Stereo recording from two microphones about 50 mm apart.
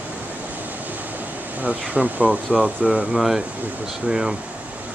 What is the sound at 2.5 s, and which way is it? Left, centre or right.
Speech, centre.